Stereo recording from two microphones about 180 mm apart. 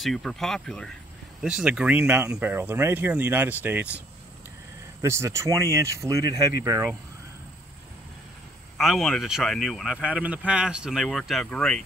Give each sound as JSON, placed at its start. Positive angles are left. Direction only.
{"t": 0.0, "sound": "a man's voice", "side_deg": 0}
{"t": 5.0, "sound": "speech", "side_deg": -15}
{"t": 8.7, "sound": "a man's voice", "side_deg": 0}